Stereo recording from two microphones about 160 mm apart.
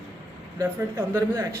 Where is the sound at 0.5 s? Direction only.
15° right (ahead or behind).